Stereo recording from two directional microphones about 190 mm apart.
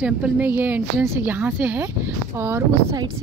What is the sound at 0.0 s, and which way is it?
A woman's voice, 5° right (ahead or behind).